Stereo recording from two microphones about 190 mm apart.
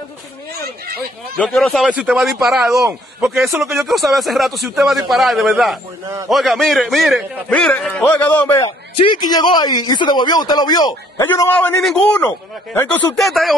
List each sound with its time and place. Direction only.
1.4 s a man's voice: centre (ahead or behind)
6.0 s a man's voice: 15° right (ahead or behind)
6.3 s a man's voice: centre (ahead or behind)
8.6 s speech: 25° left (ahead or behind)
11.2 s speech: 10° left (ahead or behind)
13.1 s a man's voice: centre (ahead or behind)